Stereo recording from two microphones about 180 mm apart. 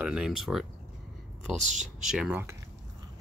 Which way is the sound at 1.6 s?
40° right (ahead or behind).